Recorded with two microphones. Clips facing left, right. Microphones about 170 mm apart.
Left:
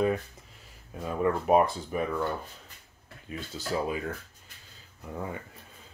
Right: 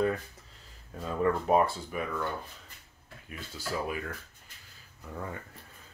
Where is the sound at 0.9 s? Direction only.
15° left (ahead or behind).